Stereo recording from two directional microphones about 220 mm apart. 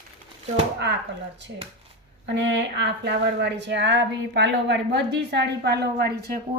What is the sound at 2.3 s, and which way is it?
Speech, 50° right (ahead or behind).